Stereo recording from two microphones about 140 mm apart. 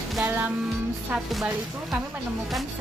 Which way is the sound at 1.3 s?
5° right (ahead or behind).